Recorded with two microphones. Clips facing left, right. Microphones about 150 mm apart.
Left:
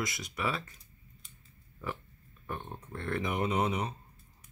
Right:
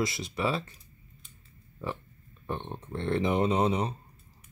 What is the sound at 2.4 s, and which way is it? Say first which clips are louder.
Speech: right 5 dB; 25° right (ahead or behind).